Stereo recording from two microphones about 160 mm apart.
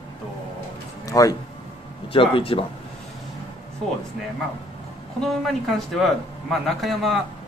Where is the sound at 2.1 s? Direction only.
35° left (ahead or behind).